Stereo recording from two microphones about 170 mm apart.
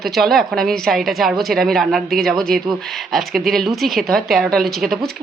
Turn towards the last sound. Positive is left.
turn(degrees=0)  # may be behind; listen again after turning